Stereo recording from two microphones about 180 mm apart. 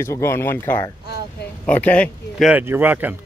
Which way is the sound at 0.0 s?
15° left (ahead or behind).